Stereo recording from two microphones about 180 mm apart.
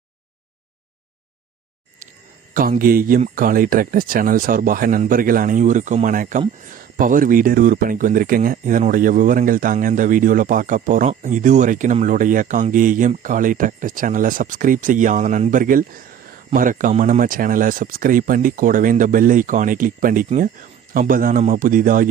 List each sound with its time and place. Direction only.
2.5 s speech: 50° right (ahead or behind)